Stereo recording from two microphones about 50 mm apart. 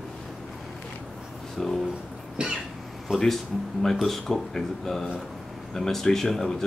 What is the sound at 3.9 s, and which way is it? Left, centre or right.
Speech, centre.